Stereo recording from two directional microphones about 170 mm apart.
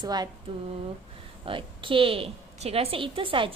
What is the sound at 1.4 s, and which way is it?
A woman's voice, 30° right (ahead or behind).